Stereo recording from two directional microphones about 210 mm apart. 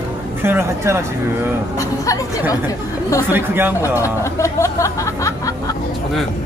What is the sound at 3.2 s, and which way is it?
Speech, 10° right (ahead or behind).